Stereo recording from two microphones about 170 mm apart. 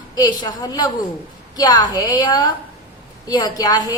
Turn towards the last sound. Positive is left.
turn(degrees=20)  # may be behind; listen again after turning